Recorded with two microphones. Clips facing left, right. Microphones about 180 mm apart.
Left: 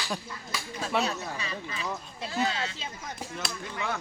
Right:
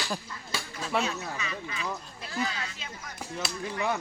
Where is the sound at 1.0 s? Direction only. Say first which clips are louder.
Left 1 dB; 30° left (ahead or behind).